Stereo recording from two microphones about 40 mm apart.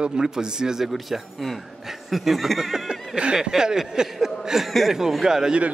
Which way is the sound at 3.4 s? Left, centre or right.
Centre.